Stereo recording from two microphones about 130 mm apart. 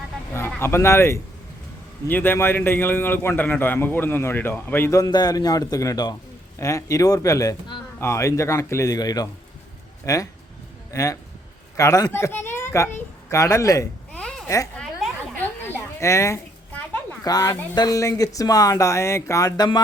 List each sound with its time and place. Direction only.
0.3 s a man's voice: 20° left (ahead or behind)
14.1 s babbling: 5° left (ahead or behind)
14.4 s speech: 25° left (ahead or behind)
15.6 s a sound: 20° left (ahead or behind)
17.2 s speech: 25° left (ahead or behind)